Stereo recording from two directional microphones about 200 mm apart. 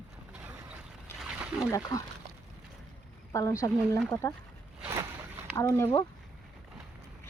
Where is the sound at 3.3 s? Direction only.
15° left (ahead or behind).